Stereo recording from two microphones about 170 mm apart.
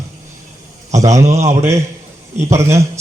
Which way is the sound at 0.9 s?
40° right (ahead or behind).